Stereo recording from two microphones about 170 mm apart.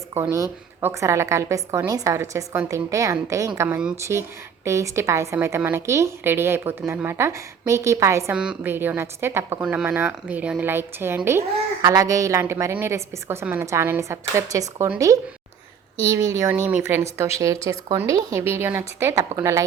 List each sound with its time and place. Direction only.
0.1 s a woman's voice: 15° right (ahead or behind)
16.4 s a woman's voice: 15° right (ahead or behind)